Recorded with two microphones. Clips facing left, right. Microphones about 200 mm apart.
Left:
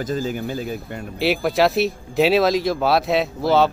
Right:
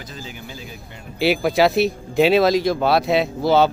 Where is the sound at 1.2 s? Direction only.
Centre (ahead or behind).